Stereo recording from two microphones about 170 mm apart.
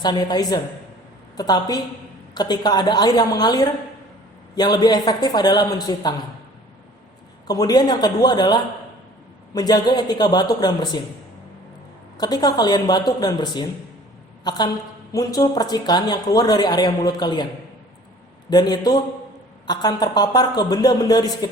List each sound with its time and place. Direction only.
0.0 s a woman's voice: 25° left (ahead or behind)
7.4 s a woman's voice: 20° left (ahead or behind)
12.1 s a woman's voice: 25° left (ahead or behind)
18.5 s a woman's voice: 25° left (ahead or behind)